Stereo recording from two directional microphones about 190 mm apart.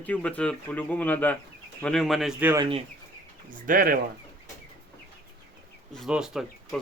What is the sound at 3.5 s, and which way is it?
Speech, 45° right (ahead or behind).